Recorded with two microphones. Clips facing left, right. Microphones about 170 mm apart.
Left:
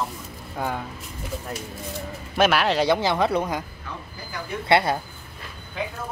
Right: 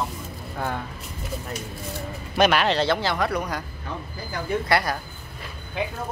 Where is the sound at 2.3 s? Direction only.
5° left (ahead or behind); by 3.6 s 25° left (ahead or behind).